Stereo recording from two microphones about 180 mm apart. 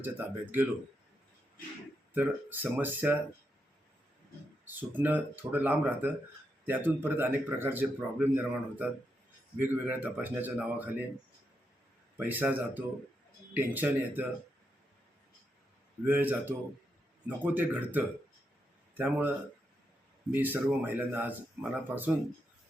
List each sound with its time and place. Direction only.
0.0 s speech: 10° right (ahead or behind)
2.1 s speech: 10° right (ahead or behind)
4.6 s speech: 10° right (ahead or behind)
12.1 s speech: 10° right (ahead or behind)
16.0 s speech: 10° right (ahead or behind)
20.3 s speech: 10° right (ahead or behind)